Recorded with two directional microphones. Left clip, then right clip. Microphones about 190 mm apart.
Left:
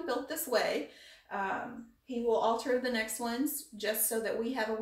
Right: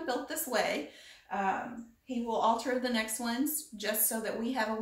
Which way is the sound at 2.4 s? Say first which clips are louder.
Right 1 dB; 15° right (ahead or behind).